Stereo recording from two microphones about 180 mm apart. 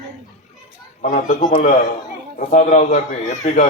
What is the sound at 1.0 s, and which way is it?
A man's voice, 45° left (ahead or behind).